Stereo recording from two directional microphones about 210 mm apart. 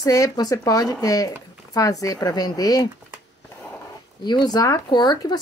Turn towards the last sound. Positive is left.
turn(degrees=20)  # may be behind; listen again after turning